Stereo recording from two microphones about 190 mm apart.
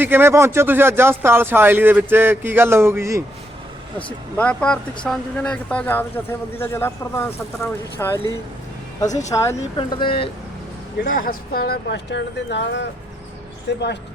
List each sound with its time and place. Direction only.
0.0 s speech: 10° right (ahead or behind)
3.9 s speech: 5° left (ahead or behind); by 10.2 s 25° left (ahead or behind)
11.0 s speech: 45° left (ahead or behind); by 13.8 s 65° left (ahead or behind)